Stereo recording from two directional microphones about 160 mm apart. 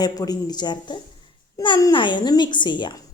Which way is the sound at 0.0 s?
25° left (ahead or behind).